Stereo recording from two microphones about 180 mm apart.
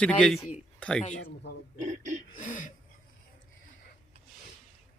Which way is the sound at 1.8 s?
45° right (ahead or behind).